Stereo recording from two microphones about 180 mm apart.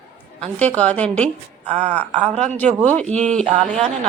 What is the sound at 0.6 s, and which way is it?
Speech, 5° left (ahead or behind).